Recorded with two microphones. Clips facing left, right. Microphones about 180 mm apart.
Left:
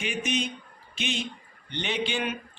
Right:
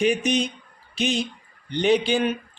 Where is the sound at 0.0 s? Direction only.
35° right (ahead or behind).